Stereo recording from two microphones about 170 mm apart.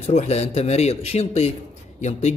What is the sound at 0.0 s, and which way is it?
A man's voice, 40° left (ahead or behind).